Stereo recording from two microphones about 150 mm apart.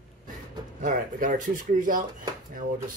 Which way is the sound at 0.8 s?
65° right (ahead or behind).